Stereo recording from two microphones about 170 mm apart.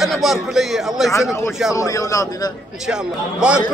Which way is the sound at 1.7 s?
20° left (ahead or behind).